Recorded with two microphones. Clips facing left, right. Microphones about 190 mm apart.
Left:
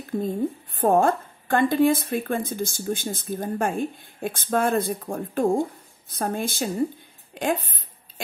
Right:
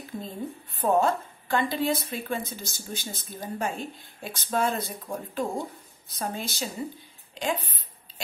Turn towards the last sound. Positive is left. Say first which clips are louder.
# left 5 dB
turn(degrees=50)  # may be behind; listen again after turning